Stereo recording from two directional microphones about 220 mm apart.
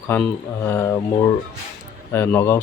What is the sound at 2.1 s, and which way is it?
Speech, 10° left (ahead or behind).